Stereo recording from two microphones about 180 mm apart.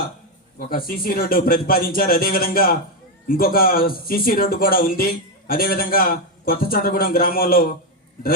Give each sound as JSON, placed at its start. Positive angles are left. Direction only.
{"t": 0.7, "sound": "speech", "side_deg": 55}